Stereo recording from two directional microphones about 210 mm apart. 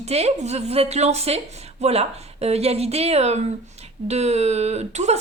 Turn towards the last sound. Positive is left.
turn(degrees=-30)  # may be behind; listen again after turning